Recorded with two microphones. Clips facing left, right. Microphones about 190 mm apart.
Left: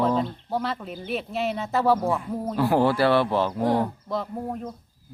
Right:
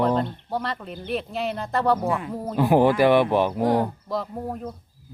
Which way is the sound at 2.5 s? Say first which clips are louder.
Right 3 dB; 15° right (ahead or behind).